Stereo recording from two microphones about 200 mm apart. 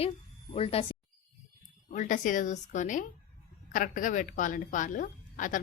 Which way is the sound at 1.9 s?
40° left (ahead or behind).